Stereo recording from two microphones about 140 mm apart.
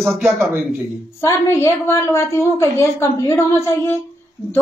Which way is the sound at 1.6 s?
20° left (ahead or behind).